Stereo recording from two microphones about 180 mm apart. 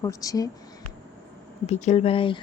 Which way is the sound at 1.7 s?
40° left (ahead or behind).